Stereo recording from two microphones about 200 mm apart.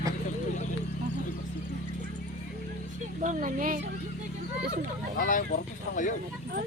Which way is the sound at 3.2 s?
40° right (ahead or behind).